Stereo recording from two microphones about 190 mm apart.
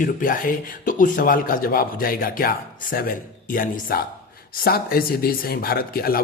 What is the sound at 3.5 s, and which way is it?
Speech, 50° left (ahead or behind).